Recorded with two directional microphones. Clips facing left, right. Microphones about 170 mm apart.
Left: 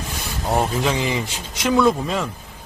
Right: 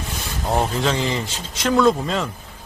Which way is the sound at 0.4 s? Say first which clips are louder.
Even; 5° left (ahead or behind).